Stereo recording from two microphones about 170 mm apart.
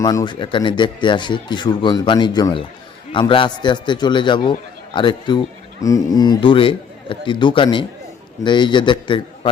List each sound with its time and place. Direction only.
0.0 s speech: 20° left (ahead or behind)